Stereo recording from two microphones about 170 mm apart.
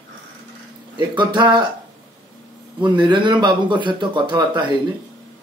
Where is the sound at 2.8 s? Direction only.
30° right (ahead or behind).